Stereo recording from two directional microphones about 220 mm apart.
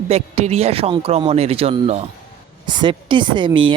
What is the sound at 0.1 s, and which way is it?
Speech, 30° right (ahead or behind).